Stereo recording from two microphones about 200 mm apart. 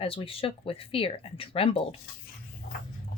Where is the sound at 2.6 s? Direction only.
45° left (ahead or behind).